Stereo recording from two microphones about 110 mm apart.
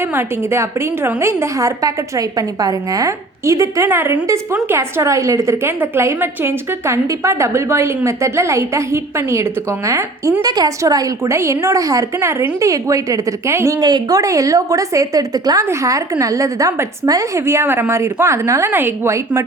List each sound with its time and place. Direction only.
0.1 s a woman's voice: 25° right (ahead or behind)
13.7 s a woman's voice: 40° right (ahead or behind)